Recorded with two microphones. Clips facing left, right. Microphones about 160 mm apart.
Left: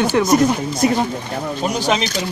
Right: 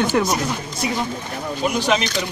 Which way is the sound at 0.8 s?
50° left (ahead or behind).